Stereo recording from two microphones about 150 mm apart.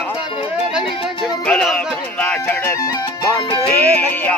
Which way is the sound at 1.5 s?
5° left (ahead or behind).